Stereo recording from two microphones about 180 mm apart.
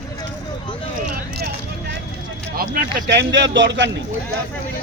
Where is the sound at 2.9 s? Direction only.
70° right (ahead or behind).